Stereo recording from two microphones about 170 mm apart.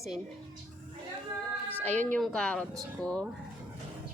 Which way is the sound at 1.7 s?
10° left (ahead or behind).